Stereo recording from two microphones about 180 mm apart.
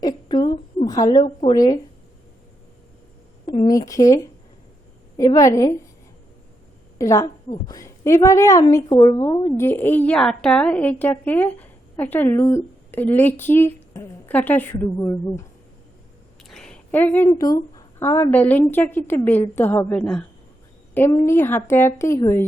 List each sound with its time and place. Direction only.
0.0 s a sound: 25° left (ahead or behind)
1.2 s a woman's voice: 35° left (ahead or behind)
1.5 s a woman's voice: 20° left (ahead or behind)
3.4 s a woman's voice: 25° left (ahead or behind)
7.0 s a woman's voice: 20° left (ahead or behind)
16.4 s a sound: centre (ahead or behind)
17.2 s a woman's voice: 20° left (ahead or behind)